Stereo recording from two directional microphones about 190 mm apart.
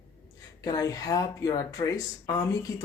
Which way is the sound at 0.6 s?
20° left (ahead or behind).